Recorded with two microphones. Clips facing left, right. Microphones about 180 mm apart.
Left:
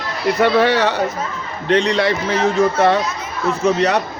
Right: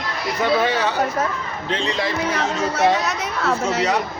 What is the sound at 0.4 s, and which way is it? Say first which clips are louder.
A man's voice: left 4 dB; 70° left (ahead or behind).